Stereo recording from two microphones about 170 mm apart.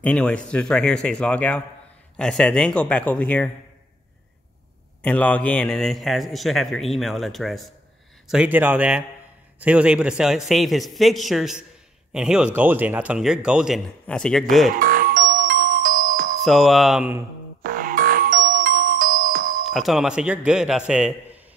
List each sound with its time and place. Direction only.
0.0 s a man's voice: 5° left (ahead or behind)
5.0 s a man's voice: 10° left (ahead or behind)
14.0 s a man's voice: 5° left (ahead or behind)
14.7 s music: 55° right (ahead or behind)
16.4 s a man's voice: centre (ahead or behind)
17.6 s music: 55° right (ahead or behind)
19.7 s a man's voice: centre (ahead or behind)